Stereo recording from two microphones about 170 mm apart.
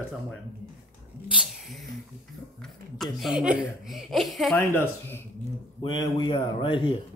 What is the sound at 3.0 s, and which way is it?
Speech, centre (ahead or behind).